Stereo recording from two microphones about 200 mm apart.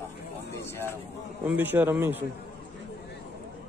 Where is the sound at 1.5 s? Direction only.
10° right (ahead or behind).